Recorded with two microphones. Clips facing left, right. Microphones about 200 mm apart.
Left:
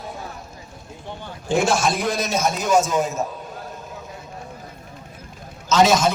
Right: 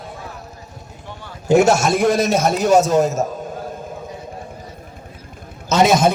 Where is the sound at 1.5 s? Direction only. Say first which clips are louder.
Right 6 dB; 40° right (ahead or behind).